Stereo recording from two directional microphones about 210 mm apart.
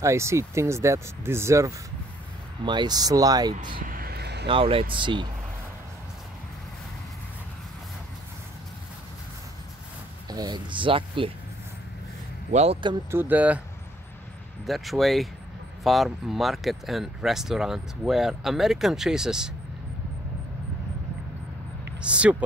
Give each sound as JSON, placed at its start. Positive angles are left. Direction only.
{"t": 0.0, "sound": "speech", "side_deg": -15}
{"t": 3.8, "sound": "a sound", "side_deg": -45}
{"t": 4.5, "sound": "speech", "side_deg": -25}
{"t": 10.3, "sound": "speech", "side_deg": -20}
{"t": 12.5, "sound": "speech", "side_deg": -30}
{"t": 13.1, "sound": "speech", "side_deg": -10}
{"t": 14.7, "sound": "speech", "side_deg": 0}
{"t": 22.0, "sound": "speech", "side_deg": -5}